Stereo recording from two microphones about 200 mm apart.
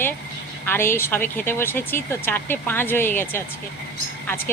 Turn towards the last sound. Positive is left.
turn(degrees=10)  # may be behind; listen again after turning